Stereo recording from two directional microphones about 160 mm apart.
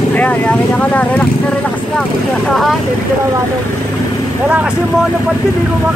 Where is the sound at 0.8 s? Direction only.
10° left (ahead or behind).